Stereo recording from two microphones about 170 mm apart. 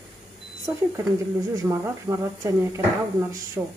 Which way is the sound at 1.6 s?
20° right (ahead or behind).